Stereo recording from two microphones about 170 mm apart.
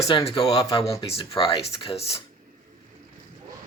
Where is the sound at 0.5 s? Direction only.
20° left (ahead or behind).